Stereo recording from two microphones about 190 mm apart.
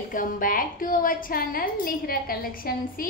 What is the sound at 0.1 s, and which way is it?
A woman's voice, 45° left (ahead or behind).